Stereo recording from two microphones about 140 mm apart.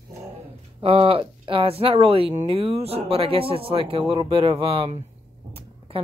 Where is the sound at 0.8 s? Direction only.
45° right (ahead or behind).